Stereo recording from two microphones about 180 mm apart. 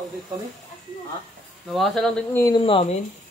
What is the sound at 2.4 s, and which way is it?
Speech, 25° left (ahead or behind).